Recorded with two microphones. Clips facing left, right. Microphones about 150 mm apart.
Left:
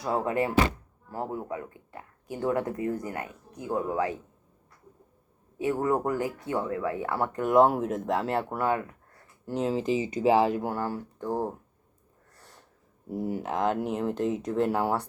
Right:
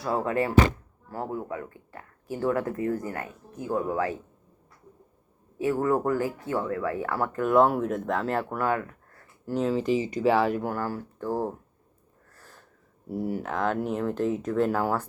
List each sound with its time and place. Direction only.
0.0 s speech: 20° left (ahead or behind)
5.5 s speech: 20° left (ahead or behind)
7.7 s speech: 35° left (ahead or behind)
9.7 s speech: 40° right (ahead or behind)
10.4 s speech: 25° left (ahead or behind)
13.1 s speech: 20° left (ahead or behind)